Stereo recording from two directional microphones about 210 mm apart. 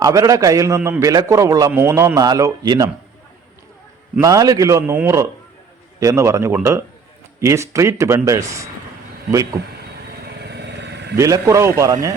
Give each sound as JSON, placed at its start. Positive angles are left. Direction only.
{"t": 0.0, "sound": "a man's voice", "side_deg": -15}
{"t": 4.1, "sound": "a man's voice", "side_deg": -15}
{"t": 10.4, "sound": "vehicle", "side_deg": -55}
{"t": 11.2, "sound": "a man's voice", "side_deg": -15}